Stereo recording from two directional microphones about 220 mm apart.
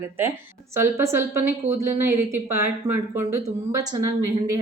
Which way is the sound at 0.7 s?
10° right (ahead or behind).